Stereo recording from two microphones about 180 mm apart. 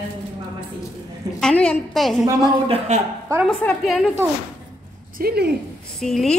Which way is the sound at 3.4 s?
Centre (ahead or behind).